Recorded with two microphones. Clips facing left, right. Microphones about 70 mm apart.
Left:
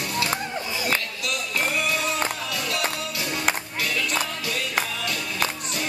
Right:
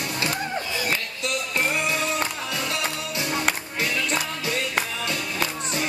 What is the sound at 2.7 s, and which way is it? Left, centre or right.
Music, right.